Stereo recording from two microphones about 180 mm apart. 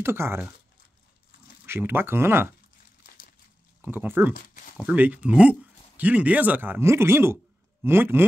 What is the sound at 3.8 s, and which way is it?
Speech, 10° right (ahead or behind).